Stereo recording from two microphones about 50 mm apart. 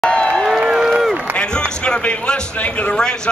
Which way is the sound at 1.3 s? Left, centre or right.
Centre.